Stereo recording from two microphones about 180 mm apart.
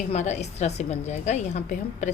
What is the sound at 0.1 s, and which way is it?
A woman's voice, 40° left (ahead or behind).